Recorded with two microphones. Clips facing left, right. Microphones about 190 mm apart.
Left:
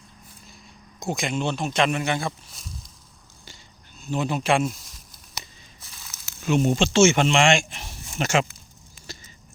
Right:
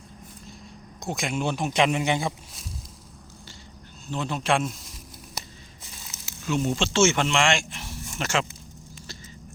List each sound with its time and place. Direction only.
0.9 s speech: centre (ahead or behind); by 2.3 s 15° right (ahead or behind)
4.0 s speech: 10° left (ahead or behind)
5.8 s a sound: 20° right (ahead or behind)
6.4 s speech: 20° left (ahead or behind)